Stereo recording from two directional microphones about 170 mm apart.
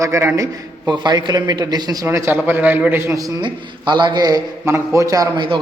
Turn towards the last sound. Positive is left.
turn(degrees=-25)  # may be behind; listen again after turning